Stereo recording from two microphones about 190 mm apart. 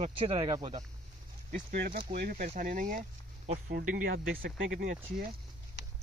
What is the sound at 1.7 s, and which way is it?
Speech, 55° right (ahead or behind).